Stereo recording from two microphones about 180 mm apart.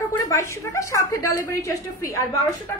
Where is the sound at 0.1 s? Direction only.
15° left (ahead or behind).